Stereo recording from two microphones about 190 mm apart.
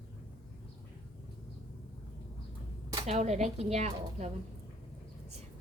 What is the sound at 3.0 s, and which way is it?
Speech, 35° right (ahead or behind).